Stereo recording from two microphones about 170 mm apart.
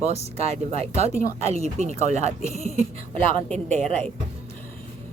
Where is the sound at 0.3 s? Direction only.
40° right (ahead or behind).